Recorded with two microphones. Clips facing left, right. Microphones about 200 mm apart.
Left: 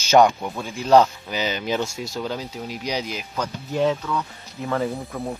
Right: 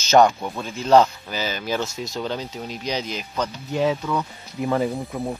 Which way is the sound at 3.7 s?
10° right (ahead or behind).